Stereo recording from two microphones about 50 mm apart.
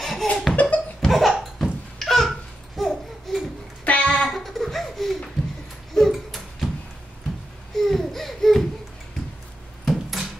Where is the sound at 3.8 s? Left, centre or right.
Left.